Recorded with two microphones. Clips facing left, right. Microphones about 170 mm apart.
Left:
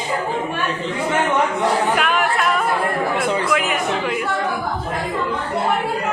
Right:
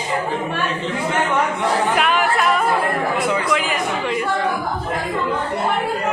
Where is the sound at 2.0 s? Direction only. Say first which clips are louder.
Right 1 dB; centre (ahead or behind).